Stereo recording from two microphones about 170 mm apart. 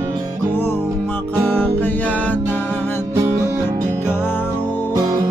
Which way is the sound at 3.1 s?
15° right (ahead or behind).